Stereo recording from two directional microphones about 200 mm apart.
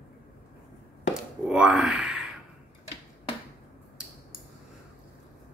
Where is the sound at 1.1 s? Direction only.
5° right (ahead or behind).